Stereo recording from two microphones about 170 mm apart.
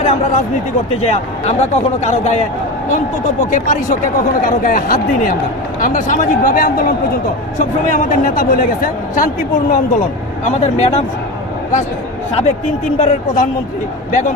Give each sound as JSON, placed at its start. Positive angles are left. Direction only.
{"t": 0.0, "sound": "a man's voice", "side_deg": 35}
{"t": 3.5, "sound": "a man's voice", "side_deg": 50}
{"t": 10.4, "sound": "a man's voice", "side_deg": 40}
{"t": 13.0, "sound": "a man's voice", "side_deg": 45}